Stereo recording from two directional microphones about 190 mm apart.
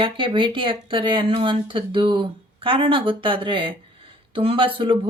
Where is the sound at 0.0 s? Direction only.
25° right (ahead or behind).